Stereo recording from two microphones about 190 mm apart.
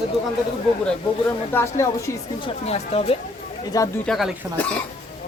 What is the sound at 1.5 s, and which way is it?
Speech, 15° left (ahead or behind).